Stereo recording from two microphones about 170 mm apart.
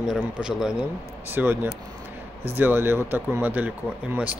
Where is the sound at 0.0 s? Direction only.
5° right (ahead or behind).